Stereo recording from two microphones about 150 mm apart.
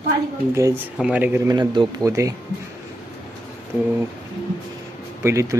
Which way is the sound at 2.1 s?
20° right (ahead or behind).